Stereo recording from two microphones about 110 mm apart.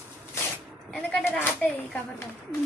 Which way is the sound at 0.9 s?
10° left (ahead or behind).